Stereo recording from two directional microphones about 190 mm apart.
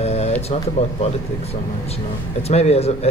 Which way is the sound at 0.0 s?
35° left (ahead or behind).